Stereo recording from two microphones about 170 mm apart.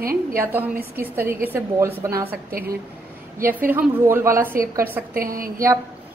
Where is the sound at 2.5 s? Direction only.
65° right (ahead or behind).